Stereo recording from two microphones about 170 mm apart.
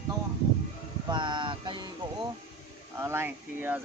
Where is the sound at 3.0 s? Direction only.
15° right (ahead or behind).